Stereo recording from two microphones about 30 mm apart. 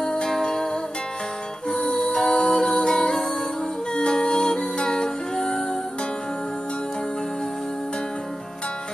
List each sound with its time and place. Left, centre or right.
0.0 s music: left
1.7 s music: left